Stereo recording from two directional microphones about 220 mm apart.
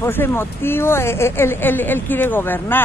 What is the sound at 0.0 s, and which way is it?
Speech, 10° left (ahead or behind).